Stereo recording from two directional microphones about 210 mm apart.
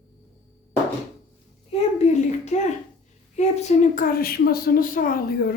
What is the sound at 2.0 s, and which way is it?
A child's voice, 35° left (ahead or behind).